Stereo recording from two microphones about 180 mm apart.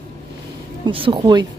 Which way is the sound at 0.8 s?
30° right (ahead or behind).